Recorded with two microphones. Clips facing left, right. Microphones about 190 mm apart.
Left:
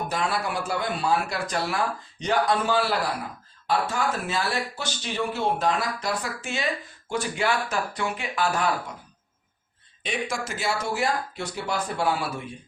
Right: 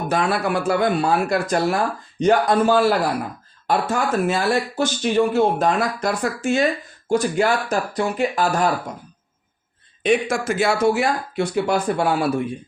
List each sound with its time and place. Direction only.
0.1 s speech: 60° right (ahead or behind); by 8.7 s 40° right (ahead or behind)
10.0 s speech: 55° right (ahead or behind)